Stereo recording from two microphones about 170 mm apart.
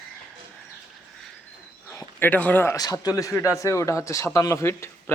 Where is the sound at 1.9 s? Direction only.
10° left (ahead or behind).